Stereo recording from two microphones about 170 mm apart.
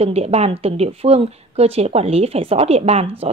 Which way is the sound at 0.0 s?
40° right (ahead or behind).